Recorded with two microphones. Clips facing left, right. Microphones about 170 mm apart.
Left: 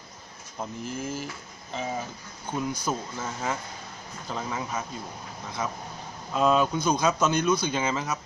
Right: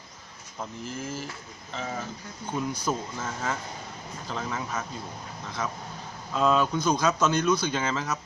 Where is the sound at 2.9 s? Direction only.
5° left (ahead or behind).